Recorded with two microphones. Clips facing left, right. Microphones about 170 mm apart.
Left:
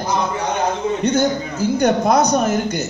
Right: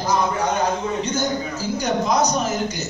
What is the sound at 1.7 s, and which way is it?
Speech, 60° left (ahead or behind).